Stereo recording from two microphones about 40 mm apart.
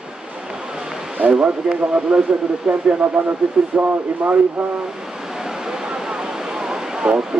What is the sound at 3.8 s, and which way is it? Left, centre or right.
Speech, right.